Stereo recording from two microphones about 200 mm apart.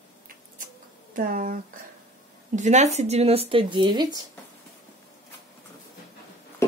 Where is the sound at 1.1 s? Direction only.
45° right (ahead or behind).